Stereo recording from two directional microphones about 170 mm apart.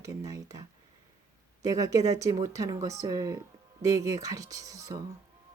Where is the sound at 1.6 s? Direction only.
20° right (ahead or behind).